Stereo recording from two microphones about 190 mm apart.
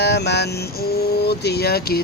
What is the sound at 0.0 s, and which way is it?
Speech, 60° left (ahead or behind).